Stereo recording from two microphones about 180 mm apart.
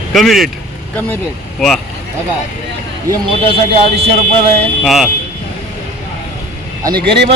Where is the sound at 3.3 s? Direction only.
30° right (ahead or behind).